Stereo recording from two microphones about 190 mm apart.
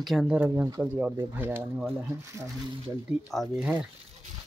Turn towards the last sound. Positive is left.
turn(degrees=-5)  # may be behind; listen again after turning